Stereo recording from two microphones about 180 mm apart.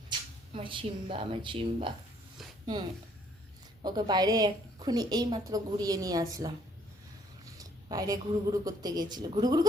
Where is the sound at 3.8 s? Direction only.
25° right (ahead or behind).